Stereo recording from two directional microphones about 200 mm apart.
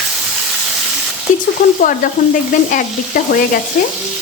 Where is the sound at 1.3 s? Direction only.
40° left (ahead or behind).